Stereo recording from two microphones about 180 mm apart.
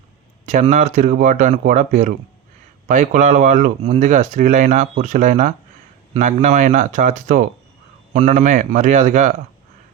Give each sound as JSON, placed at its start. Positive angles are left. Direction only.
{"t": 0.4, "sound": "speech", "side_deg": -40}